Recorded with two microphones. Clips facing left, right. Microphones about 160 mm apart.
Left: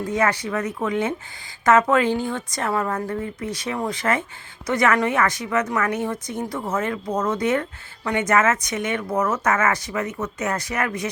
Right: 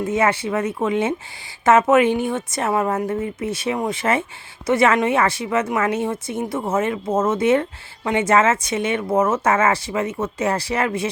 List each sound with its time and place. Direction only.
0.0 s a woman's voice: 25° right (ahead or behind)